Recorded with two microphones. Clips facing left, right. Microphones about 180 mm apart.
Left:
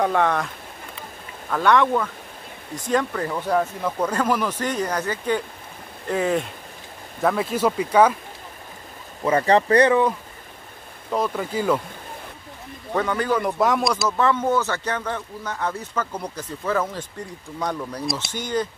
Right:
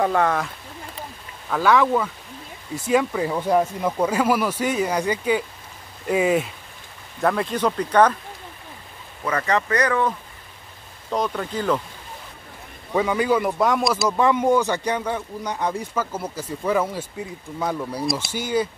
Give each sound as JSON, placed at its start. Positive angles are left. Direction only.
{"t": 0.0, "sound": "speech", "side_deg": 0}
{"t": 1.5, "sound": "speech", "side_deg": 0}
{"t": 9.2, "sound": "speech", "side_deg": 30}
{"t": 11.1, "sound": "speech", "side_deg": 5}
{"t": 12.9, "sound": "speech", "side_deg": -10}
{"t": 14.0, "sound": "speech", "side_deg": -15}